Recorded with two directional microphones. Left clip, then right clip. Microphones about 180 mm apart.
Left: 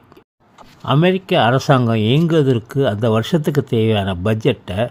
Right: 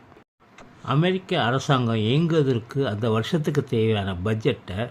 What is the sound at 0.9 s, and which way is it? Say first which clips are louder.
Speech: left 8 dB; 35° left (ahead or behind).